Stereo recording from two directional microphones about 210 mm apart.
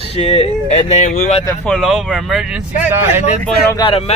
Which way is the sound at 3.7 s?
25° left (ahead or behind).